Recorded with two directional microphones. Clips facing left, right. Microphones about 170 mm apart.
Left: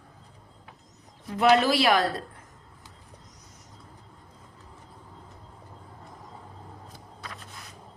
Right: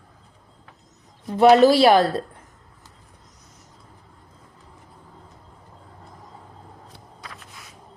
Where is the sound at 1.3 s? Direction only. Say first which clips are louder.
Right 7 dB; 35° right (ahead or behind).